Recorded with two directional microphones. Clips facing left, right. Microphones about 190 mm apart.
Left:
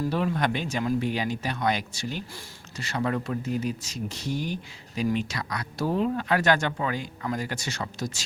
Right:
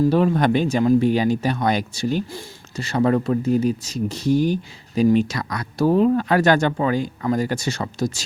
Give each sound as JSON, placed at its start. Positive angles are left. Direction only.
{"t": 0.1, "sound": "speech", "side_deg": -35}